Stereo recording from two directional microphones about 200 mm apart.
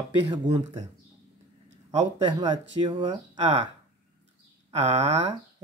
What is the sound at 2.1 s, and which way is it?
Speech, 20° right (ahead or behind).